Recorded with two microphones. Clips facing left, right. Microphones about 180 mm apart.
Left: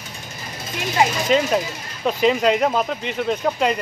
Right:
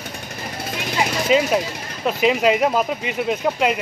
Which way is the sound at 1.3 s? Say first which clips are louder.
Right 1 dB; 5° right (ahead or behind).